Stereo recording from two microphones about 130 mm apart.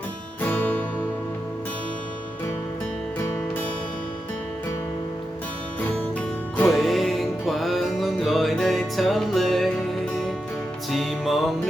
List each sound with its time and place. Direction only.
0.4 s music: 15° left (ahead or behind)
6.7 s music: centre (ahead or behind)
10.9 s music: centre (ahead or behind)